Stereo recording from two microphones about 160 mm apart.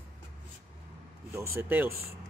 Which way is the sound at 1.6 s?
15° right (ahead or behind).